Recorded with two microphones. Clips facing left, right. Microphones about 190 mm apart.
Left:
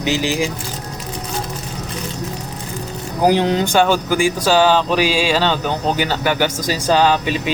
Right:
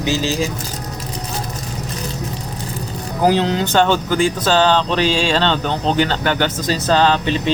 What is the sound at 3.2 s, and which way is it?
Speech, 15° left (ahead or behind).